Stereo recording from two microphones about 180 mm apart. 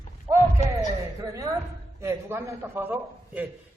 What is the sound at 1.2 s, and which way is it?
A woman's voice, 15° right (ahead or behind).